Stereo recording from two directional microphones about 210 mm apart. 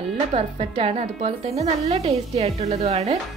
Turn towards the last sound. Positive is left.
turn(degrees=-30)  # may be behind; listen again after turning